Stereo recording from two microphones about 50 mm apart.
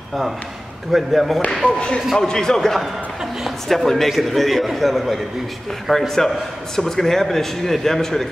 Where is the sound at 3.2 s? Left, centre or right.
Centre.